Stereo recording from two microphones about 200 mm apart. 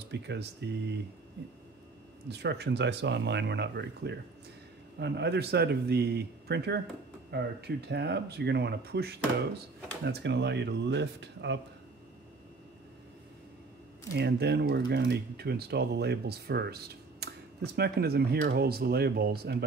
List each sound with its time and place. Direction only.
0.1 s speech: 60° right (ahead or behind)
2.2 s speech: 55° right (ahead or behind)
14.1 s speech: 55° right (ahead or behind)